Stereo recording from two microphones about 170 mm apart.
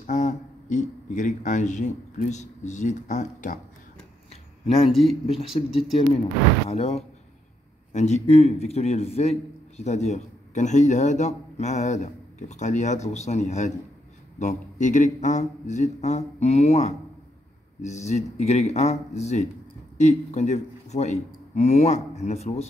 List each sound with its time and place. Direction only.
0.0 s a man's voice: 45° left (ahead or behind)
4.3 s a sound: 35° left (ahead or behind)
5.2 s a man's voice: 35° left (ahead or behind)